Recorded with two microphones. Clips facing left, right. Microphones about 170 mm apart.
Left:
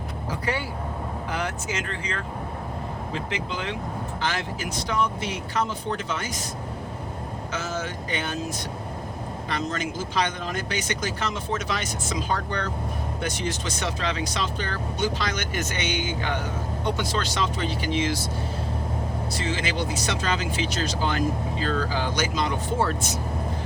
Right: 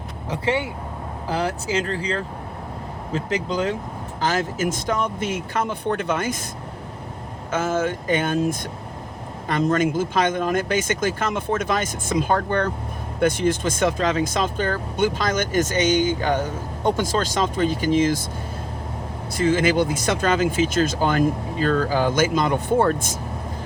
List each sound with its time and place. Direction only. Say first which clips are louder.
0.3 s speech: right 6 dB; 25° right (ahead or behind); by 6.3 s 55° right (ahead or behind)
7.5 s speech: right 10 dB; 50° right (ahead or behind)
19.3 s speech: right 12 dB; 50° right (ahead or behind)